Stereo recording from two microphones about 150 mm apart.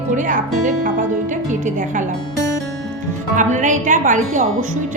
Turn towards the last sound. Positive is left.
turn(degrees=-55)  # may be behind; listen again after turning